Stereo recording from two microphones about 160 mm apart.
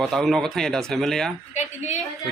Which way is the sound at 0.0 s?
Centre (ahead or behind).